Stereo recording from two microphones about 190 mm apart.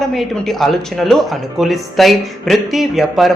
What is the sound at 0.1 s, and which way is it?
Speech, centre (ahead or behind).